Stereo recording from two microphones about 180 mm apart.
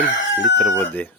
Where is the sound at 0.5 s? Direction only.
5° left (ahead or behind).